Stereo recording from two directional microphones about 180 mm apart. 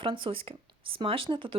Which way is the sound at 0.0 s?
30° right (ahead or behind).